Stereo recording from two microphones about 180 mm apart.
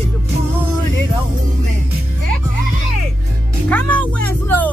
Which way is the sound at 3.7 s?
10° left (ahead or behind).